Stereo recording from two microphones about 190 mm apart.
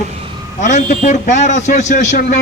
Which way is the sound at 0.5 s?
40° left (ahead or behind).